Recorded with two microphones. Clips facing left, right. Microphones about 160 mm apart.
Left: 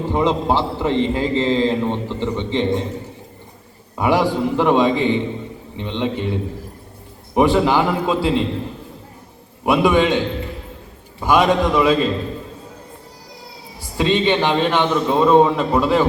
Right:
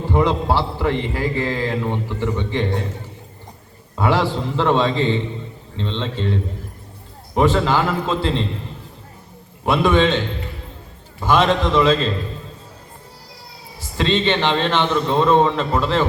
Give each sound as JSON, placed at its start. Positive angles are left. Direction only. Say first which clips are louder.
{"t": 0.1, "sound": "a man's voice", "louder": "even", "side_deg": 20}
{"t": 3.9, "sound": "a man's voice", "louder": "left 2 dB", "side_deg": 15}
{"t": 9.6, "sound": "a man's voice", "louder": "left 1 dB", "side_deg": 10}
{"t": 11.2, "sound": "a man's voice", "louder": "left 1 dB", "side_deg": 10}
{"t": 13.9, "sound": "a man's voice", "louder": "left 2 dB", "side_deg": 15}